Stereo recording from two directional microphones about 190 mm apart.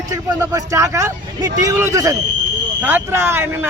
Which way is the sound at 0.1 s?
20° right (ahead or behind).